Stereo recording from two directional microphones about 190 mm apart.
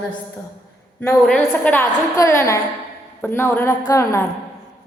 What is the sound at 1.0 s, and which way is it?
A woman's voice, 5° left (ahead or behind).